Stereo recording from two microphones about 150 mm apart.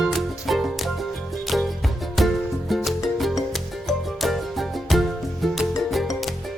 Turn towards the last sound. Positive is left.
turn(degrees=0)  # may be behind; listen again after turning